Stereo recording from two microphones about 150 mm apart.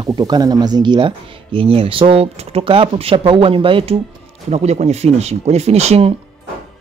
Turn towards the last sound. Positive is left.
turn(degrees=-45)  # may be behind; listen again after turning